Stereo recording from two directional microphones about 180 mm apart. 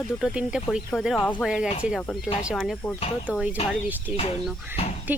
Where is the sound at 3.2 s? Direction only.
5° right (ahead or behind).